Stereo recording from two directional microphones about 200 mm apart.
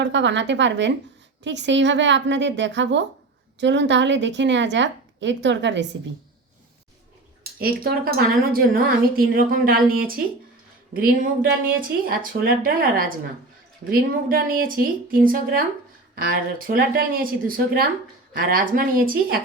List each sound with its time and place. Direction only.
0.0 s a woman's voice: 65° right (ahead or behind)
7.6 s a woman's voice: 50° right (ahead or behind)